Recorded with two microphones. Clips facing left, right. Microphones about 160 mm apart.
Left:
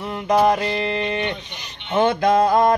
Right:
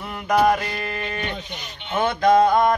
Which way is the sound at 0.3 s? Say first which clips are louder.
Left 1 dB; 25° left (ahead or behind).